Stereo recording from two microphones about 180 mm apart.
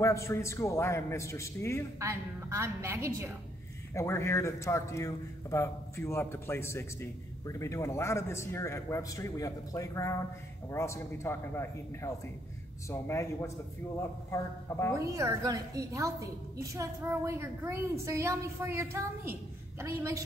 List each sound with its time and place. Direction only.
0.0 s a man's voice: 15° left (ahead or behind)
2.0 s a woman's voice: 15° right (ahead or behind)
3.9 s a man's voice: 15° left (ahead or behind)
15.0 s a woman's voice: 15° right (ahead or behind)